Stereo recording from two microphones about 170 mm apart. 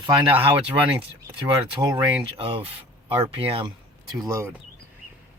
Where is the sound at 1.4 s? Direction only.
25° right (ahead or behind).